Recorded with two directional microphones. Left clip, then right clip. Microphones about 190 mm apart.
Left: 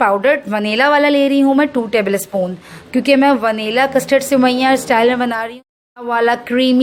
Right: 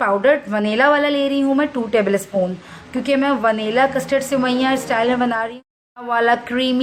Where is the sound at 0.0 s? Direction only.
35° left (ahead or behind).